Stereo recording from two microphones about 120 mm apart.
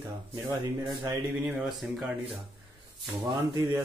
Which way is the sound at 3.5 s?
35° right (ahead or behind).